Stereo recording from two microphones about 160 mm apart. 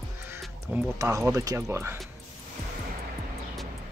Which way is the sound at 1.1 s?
20° right (ahead or behind).